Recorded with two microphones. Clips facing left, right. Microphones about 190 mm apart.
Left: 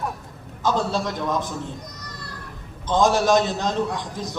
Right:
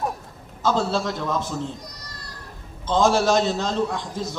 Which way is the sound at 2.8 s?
15° left (ahead or behind).